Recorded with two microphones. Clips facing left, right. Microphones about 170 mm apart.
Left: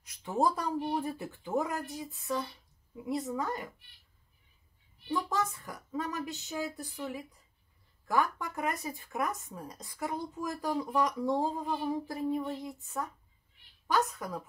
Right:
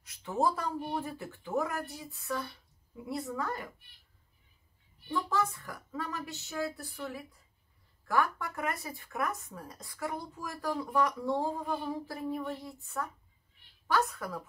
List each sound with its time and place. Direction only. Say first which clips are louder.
0.0 s speech: left 1 dB; 15° left (ahead or behind)
5.0 s speech: even; 20° left (ahead or behind)